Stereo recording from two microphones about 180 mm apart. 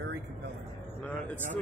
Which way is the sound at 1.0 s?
10° left (ahead or behind).